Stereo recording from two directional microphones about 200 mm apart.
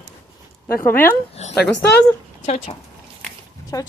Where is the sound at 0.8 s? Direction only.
10° left (ahead or behind).